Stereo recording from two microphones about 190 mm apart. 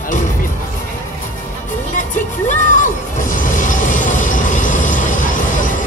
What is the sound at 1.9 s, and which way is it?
Music, 40° left (ahead or behind).